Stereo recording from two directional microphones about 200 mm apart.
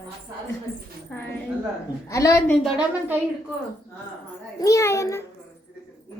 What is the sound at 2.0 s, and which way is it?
Speech, 15° left (ahead or behind).